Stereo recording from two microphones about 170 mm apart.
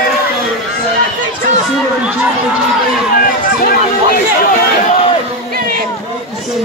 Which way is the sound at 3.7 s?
60° left (ahead or behind).